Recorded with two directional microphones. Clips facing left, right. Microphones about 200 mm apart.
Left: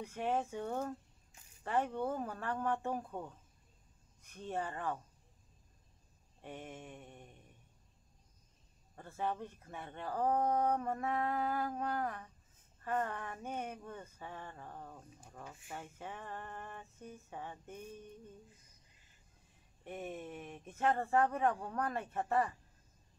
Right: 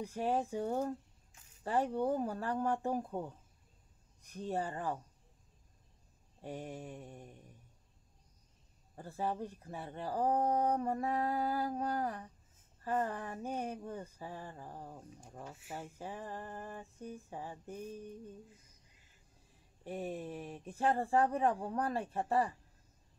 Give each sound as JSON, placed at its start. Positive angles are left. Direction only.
{"t": 0.0, "sound": "speech", "side_deg": -35}
{"t": 3.0, "sound": "speech", "side_deg": -15}
{"t": 4.2, "sound": "speech", "side_deg": -35}
{"t": 6.4, "sound": "speech", "side_deg": -35}
{"t": 8.9, "sound": "speech", "side_deg": -35}
{"t": 16.0, "sound": "speech", "side_deg": -35}
{"t": 19.8, "sound": "speech", "side_deg": -35}